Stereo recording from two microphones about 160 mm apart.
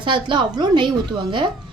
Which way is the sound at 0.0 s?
30° right (ahead or behind).